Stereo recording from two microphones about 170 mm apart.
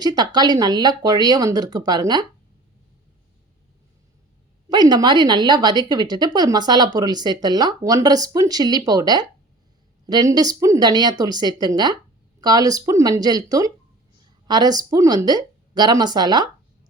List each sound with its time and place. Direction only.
0.0 s speech: 25° right (ahead or behind)
4.7 s speech: 25° right (ahead or behind)